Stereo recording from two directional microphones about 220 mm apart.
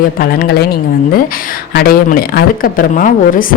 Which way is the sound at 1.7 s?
45° left (ahead or behind).